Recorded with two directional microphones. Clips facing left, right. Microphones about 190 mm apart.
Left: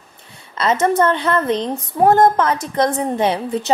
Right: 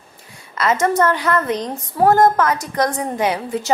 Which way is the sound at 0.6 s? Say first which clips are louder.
Left 1 dB; 25° left (ahead or behind).